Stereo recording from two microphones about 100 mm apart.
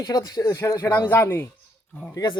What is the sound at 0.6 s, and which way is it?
Speech, 25° left (ahead or behind).